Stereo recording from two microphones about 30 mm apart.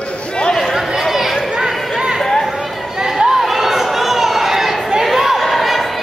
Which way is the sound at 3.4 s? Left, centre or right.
Centre.